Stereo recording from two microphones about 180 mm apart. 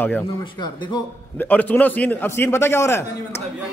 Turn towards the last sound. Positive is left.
turn(degrees=15)  # may be behind; listen again after turning